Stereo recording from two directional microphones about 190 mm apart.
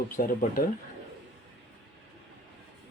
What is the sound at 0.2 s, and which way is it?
Speech, 50° left (ahead or behind).